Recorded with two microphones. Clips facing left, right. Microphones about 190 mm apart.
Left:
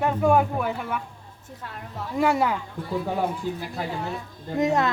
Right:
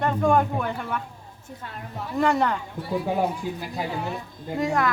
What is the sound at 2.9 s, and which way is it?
Speech, 15° right (ahead or behind).